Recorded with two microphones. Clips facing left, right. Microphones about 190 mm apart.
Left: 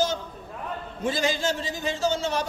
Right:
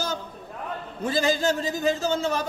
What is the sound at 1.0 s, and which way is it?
A man's voice, 40° right (ahead or behind).